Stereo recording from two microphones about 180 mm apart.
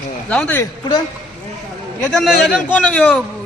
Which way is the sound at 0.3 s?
10° left (ahead or behind).